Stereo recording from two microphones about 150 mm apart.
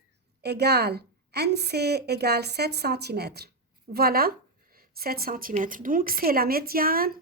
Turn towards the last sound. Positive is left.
turn(degrees=-80)